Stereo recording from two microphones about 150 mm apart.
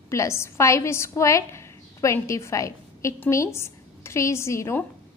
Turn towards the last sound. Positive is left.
turn(degrees=15)  # may be behind; listen again after turning